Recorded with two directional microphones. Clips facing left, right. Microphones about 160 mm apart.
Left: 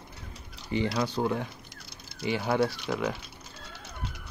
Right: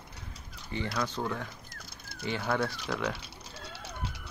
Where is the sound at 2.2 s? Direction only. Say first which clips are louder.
Left 4 dB; 10° left (ahead or behind).